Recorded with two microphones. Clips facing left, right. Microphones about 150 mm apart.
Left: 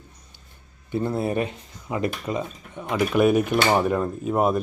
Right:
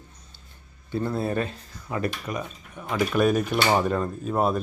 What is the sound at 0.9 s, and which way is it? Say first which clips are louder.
Speech: left 2 dB; 20° left (ahead or behind).